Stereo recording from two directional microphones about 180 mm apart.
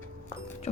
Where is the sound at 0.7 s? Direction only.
35° left (ahead or behind).